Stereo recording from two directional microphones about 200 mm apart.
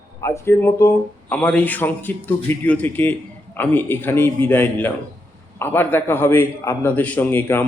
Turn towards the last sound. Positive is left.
turn(degrees=10)  # may be behind; listen again after turning